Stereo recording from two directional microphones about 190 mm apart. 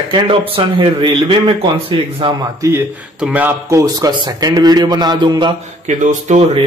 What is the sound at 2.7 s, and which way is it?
Speech, 5° right (ahead or behind).